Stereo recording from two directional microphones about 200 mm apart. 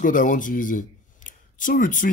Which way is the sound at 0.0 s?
40° left (ahead or behind).